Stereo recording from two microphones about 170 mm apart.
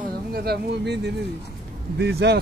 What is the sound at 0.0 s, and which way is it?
Speech, 65° right (ahead or behind).